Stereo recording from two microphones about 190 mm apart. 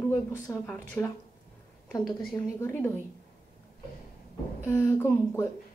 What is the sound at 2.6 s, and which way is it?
Speech, 10° left (ahead or behind).